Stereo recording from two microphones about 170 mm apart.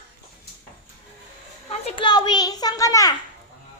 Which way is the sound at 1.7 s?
35° left (ahead or behind).